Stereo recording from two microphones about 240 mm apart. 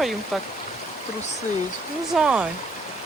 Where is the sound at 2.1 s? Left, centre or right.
Centre.